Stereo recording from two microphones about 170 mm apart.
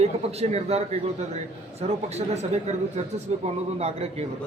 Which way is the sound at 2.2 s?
40° right (ahead or behind).